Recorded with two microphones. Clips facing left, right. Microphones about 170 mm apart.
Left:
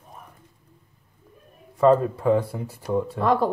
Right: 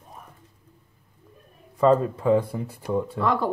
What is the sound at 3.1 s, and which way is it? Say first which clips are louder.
Speech: left 4 dB; 50° left (ahead or behind).